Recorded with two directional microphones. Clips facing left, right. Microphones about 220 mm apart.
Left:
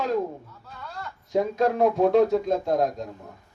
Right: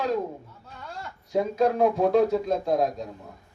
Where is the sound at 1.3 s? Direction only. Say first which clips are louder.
Even; centre (ahead or behind).